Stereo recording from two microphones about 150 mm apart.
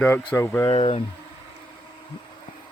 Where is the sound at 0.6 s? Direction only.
35° left (ahead or behind).